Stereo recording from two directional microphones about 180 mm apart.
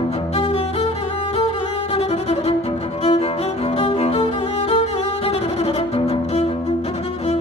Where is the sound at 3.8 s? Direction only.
35° left (ahead or behind).